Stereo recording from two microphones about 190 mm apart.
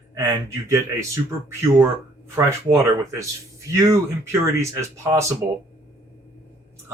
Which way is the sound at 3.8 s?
15° right (ahead or behind).